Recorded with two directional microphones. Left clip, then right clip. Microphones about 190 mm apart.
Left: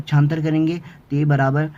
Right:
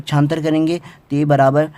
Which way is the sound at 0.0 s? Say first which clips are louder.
Right 5 dB; 45° right (ahead or behind).